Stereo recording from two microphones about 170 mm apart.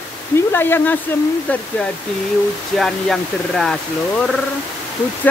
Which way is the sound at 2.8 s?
Centre (ahead or behind).